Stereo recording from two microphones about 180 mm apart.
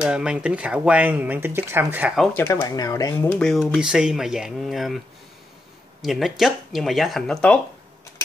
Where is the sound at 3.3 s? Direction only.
5° left (ahead or behind).